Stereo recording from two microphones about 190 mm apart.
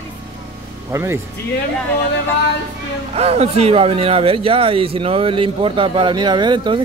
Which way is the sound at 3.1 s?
30° right (ahead or behind).